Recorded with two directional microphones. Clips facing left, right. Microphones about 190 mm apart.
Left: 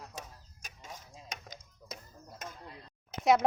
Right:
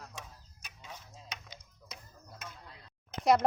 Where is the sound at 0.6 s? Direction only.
45° left (ahead or behind).